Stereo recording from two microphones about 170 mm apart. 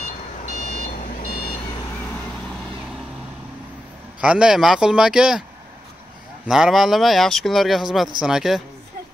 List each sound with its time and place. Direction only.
0.0 s vehicle: 55° left (ahead or behind)
4.2 s speech: 5° right (ahead or behind)
6.4 s speech: centre (ahead or behind)